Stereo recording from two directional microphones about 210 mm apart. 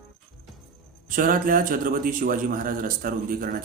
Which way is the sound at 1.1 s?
40° right (ahead or behind).